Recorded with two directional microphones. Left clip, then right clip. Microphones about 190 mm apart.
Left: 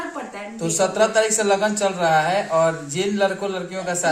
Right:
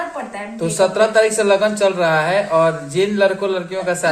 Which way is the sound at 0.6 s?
15° right (ahead or behind).